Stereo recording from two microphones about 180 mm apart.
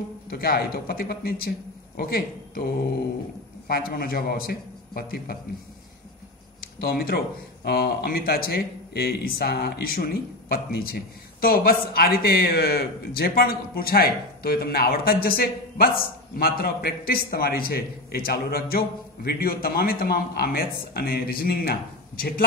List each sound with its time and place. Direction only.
0.3 s a man's voice: 60° left (ahead or behind)
6.6 s a man's voice: 55° left (ahead or behind)